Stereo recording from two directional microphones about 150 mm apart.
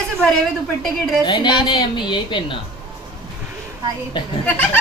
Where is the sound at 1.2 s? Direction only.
30° left (ahead or behind).